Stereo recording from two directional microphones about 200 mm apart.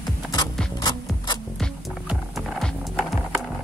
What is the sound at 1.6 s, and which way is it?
Music, centre (ahead or behind).